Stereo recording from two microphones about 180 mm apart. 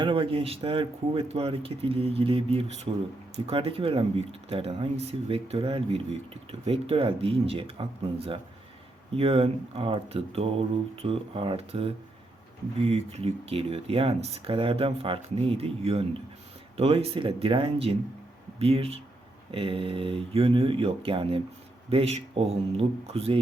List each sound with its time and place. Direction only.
0.0 s speech: 30° right (ahead or behind)